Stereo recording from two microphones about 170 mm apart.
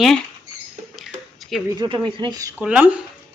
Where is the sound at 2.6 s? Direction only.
5° right (ahead or behind).